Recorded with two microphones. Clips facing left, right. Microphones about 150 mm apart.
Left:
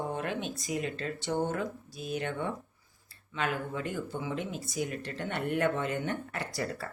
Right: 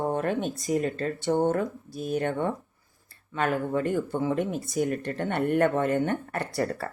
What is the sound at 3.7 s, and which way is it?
A woman's voice, 50° right (ahead or behind).